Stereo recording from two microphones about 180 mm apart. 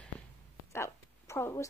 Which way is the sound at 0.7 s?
15° left (ahead or behind).